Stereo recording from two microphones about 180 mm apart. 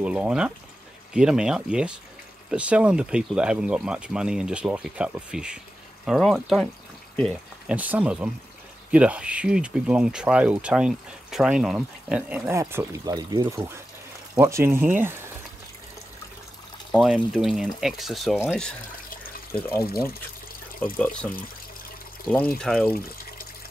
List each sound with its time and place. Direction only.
0.0 s speech: 5° right (ahead or behind)
7.7 s speech: 10° right (ahead or behind)
16.9 s speech: centre (ahead or behind)
19.5 s speech: 10° left (ahead or behind)
19.8 s speech: 55° left (ahead or behind)
20.8 s speech: 10° left (ahead or behind)
22.6 s speech: 5° left (ahead or behind)
22.9 s water: 55° left (ahead or behind)